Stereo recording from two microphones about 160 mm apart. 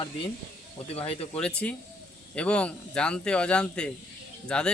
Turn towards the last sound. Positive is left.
turn(degrees=5)  # may be behind; listen again after turning